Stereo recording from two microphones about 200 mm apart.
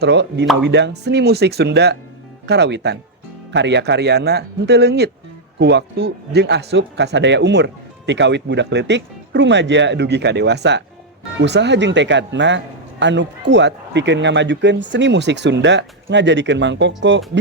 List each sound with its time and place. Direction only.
0.0 s speech: 60° right (ahead or behind)